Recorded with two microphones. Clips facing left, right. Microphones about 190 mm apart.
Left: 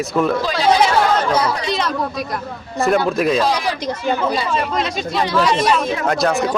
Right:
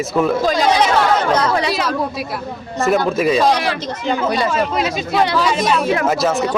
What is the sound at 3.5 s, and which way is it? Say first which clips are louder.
Speech: right 2 dB; 65° right (ahead or behind).